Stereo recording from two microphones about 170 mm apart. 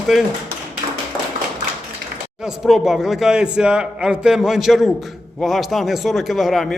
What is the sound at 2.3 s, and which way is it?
Speech, 5° right (ahead or behind).